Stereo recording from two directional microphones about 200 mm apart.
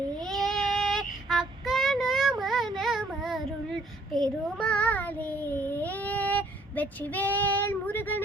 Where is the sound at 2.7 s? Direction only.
Centre (ahead or behind).